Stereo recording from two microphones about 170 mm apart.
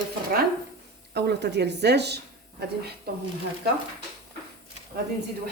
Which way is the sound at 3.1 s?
65° right (ahead or behind).